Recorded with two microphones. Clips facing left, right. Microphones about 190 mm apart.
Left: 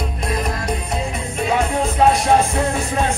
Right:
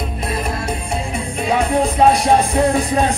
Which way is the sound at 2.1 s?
35° right (ahead or behind).